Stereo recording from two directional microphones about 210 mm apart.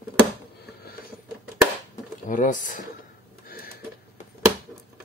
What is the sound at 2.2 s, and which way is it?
Speech, 40° left (ahead or behind).